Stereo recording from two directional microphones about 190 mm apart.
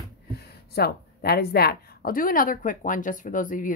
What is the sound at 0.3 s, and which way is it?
Speech, 55° left (ahead or behind).